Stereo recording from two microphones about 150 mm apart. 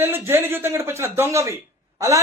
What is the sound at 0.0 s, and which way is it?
A woman's voice, 15° right (ahead or behind).